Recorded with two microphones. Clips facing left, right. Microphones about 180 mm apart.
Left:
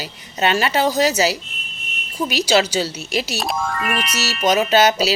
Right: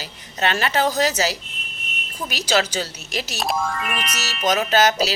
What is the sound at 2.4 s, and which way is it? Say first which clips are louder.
Speech: left 2 dB; 10° left (ahead or behind).